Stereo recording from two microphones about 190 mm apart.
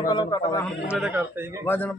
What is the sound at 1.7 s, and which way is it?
Speech, 10° left (ahead or behind).